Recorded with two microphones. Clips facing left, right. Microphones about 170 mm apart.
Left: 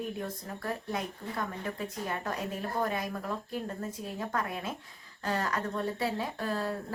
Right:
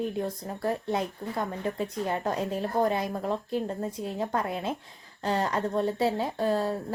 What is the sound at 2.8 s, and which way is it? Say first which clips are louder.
A woman's voice: right 6 dB; 30° right (ahead or behind).